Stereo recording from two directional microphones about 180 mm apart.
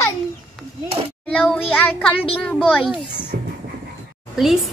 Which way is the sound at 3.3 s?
55° right (ahead or behind).